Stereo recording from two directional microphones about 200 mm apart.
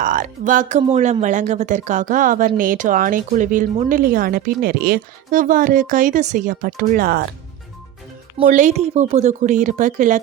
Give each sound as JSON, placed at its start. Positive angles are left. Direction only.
{"t": 0.0, "sound": "speech", "side_deg": -40}
{"t": 8.4, "sound": "speech", "side_deg": -35}